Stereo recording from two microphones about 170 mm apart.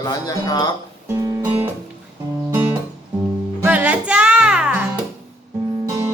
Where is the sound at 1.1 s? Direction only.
20° right (ahead or behind).